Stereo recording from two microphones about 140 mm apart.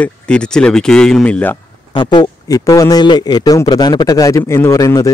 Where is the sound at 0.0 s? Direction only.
5° left (ahead or behind).